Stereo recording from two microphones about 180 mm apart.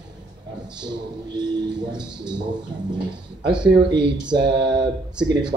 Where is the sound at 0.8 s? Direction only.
25° right (ahead or behind).